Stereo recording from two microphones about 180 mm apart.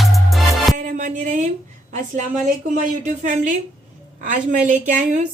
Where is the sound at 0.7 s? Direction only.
45° right (ahead or behind).